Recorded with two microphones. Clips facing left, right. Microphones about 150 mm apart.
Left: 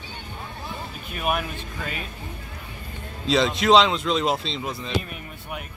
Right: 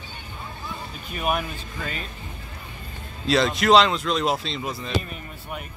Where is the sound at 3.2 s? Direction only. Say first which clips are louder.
Even; 5° right (ahead or behind).